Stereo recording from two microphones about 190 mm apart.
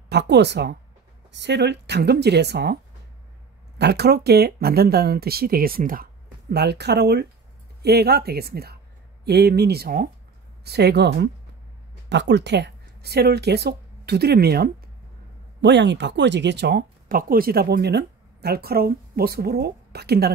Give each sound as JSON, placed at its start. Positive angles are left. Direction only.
{"t": 0.1, "sound": "speech", "side_deg": -60}
{"t": 6.5, "sound": "speech", "side_deg": -60}
{"t": 15.6, "sound": "speech", "side_deg": -65}